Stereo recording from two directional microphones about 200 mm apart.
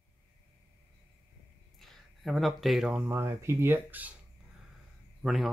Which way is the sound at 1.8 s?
Centre (ahead or behind).